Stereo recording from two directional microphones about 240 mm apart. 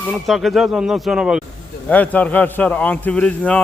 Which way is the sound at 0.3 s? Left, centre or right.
Centre.